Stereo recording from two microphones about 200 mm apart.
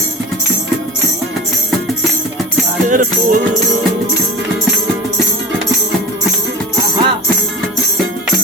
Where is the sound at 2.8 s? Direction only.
40° right (ahead or behind).